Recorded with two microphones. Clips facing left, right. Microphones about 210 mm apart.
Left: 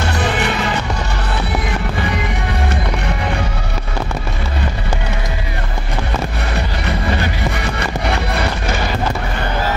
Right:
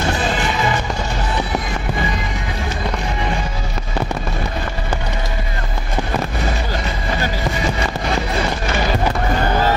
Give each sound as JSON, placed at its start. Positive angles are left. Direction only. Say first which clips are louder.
{"t": 0.2, "sound": "music", "louder": "left 1 dB", "side_deg": 65}
{"t": 6.5, "sound": "music", "louder": "left 2 dB", "side_deg": 65}